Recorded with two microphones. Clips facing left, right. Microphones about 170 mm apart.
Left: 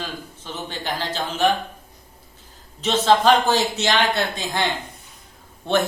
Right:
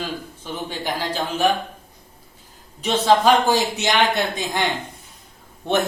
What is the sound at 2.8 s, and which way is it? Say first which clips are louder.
A man's voice: even; 10° right (ahead or behind).